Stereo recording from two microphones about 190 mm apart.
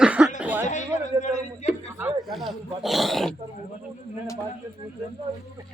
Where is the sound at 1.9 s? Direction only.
10° right (ahead or behind).